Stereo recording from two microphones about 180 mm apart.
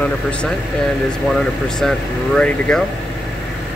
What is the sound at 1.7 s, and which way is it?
Speech, 5° left (ahead or behind).